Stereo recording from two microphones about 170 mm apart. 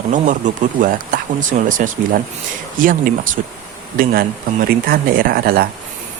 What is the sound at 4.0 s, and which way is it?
Speech, 55° right (ahead or behind).